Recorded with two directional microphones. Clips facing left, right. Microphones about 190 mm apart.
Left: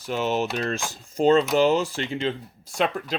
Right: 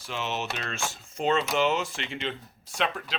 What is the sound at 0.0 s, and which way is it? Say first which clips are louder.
Speech: left 8 dB; 40° left (ahead or behind).